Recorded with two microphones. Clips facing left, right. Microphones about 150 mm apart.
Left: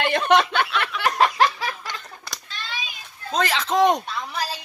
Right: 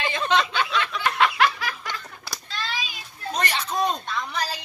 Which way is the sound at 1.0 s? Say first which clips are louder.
Left 3 dB; 40° left (ahead or behind).